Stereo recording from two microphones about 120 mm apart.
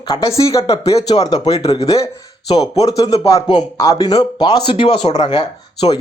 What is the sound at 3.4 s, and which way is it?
Speech, 40° left (ahead or behind).